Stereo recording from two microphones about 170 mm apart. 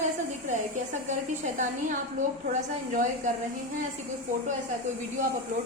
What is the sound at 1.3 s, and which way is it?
Speech, 50° right (ahead or behind).